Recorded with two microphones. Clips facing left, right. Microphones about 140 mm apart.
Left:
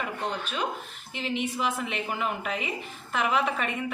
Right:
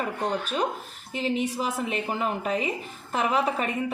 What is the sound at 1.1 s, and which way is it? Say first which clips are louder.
A woman's voice: right 4 dB; 35° right (ahead or behind).